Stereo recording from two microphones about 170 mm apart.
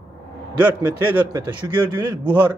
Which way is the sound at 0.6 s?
15° right (ahead or behind).